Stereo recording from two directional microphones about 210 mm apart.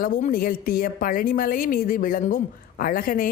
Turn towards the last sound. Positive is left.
turn(degrees=40)  # may be behind; listen again after turning